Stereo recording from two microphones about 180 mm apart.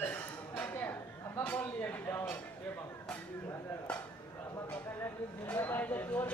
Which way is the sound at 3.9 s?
5° left (ahead or behind).